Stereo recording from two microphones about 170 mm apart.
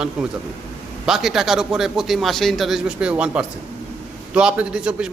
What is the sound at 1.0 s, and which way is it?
A man's voice, centre (ahead or behind).